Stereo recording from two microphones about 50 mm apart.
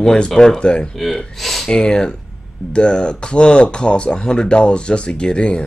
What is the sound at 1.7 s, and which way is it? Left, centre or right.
Speech, centre.